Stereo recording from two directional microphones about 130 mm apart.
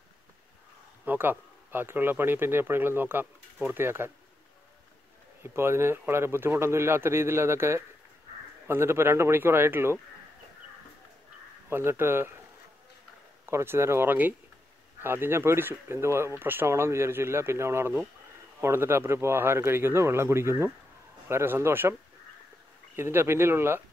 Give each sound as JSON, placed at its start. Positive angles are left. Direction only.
{"t": 1.0, "sound": "speech", "side_deg": -15}
{"t": 5.4, "sound": "speech", "side_deg": -20}
{"t": 11.7, "sound": "speech", "side_deg": -20}
{"t": 13.5, "sound": "speech", "side_deg": -20}
{"t": 22.9, "sound": "speech", "side_deg": -20}